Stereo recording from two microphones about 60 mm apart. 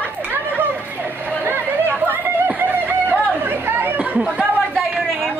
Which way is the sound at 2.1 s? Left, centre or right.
Right.